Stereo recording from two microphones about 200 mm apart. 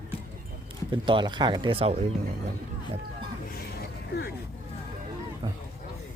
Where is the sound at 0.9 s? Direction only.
25° right (ahead or behind).